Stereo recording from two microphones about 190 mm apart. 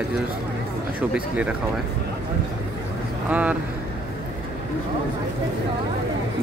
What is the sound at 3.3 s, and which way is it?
Speech, 10° right (ahead or behind).